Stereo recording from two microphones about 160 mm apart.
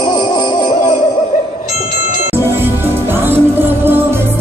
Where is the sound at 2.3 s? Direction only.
15° right (ahead or behind).